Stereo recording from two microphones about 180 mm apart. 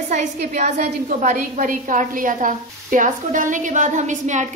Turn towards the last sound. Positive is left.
turn(degrees=-40)  # may be behind; listen again after turning